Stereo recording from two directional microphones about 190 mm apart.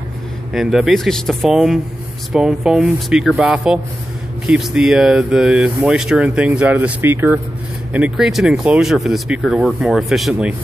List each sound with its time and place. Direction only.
0.5 s speech: centre (ahead or behind)